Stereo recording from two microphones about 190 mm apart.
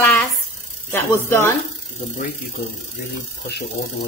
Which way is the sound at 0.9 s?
10° left (ahead or behind).